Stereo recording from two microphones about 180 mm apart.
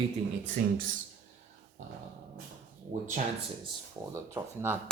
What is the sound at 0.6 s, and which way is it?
Speech, 40° right (ahead or behind).